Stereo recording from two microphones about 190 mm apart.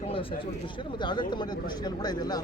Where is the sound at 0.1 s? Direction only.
30° left (ahead or behind).